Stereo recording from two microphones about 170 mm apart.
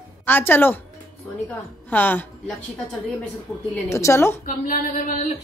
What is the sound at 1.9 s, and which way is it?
Speech, 10° left (ahead or behind).